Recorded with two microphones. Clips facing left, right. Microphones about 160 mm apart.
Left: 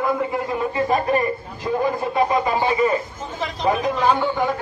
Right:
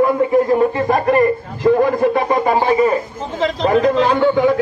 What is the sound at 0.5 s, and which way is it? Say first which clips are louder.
A man's voice: right 6 dB; 50° right (ahead or behind).